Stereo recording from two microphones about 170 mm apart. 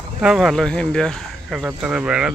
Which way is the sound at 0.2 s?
5° right (ahead or behind).